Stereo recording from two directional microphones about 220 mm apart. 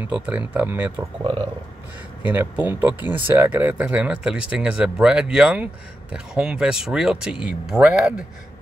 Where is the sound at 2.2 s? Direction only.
10° right (ahead or behind).